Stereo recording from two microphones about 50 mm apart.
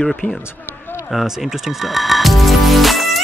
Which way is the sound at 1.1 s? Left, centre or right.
Centre.